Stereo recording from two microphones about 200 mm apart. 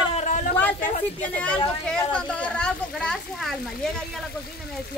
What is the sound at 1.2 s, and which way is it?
A woman's voice, 5° left (ahead or behind).